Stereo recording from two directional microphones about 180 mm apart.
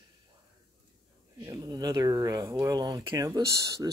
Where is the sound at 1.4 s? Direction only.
20° right (ahead or behind).